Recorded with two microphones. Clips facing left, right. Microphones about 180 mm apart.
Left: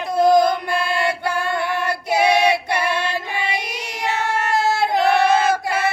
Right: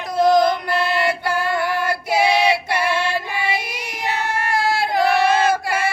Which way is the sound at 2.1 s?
10° right (ahead or behind).